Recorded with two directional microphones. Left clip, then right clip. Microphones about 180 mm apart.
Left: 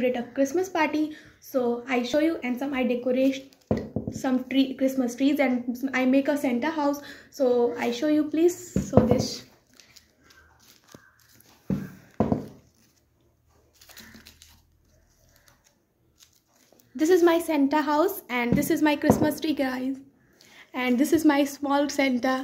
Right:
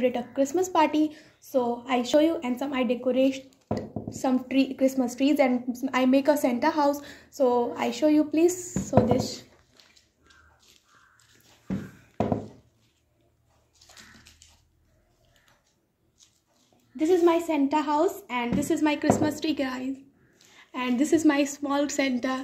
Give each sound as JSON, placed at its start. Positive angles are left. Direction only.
{"t": 0.0, "sound": "a woman's voice", "side_deg": -30}
{"t": 9.1, "sound": "speech", "side_deg": -10}
{"t": 16.9, "sound": "a woman's voice", "side_deg": 35}